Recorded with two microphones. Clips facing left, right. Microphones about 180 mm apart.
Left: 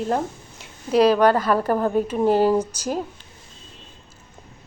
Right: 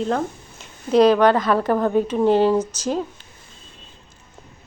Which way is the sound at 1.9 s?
5° left (ahead or behind).